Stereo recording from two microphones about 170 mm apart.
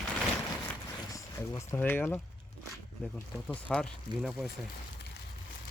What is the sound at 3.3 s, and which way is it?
Speech, 5° left (ahead or behind).